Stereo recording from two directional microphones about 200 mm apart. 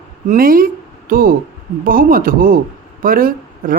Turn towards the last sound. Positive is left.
turn(degrees=-45)  # may be behind; listen again after turning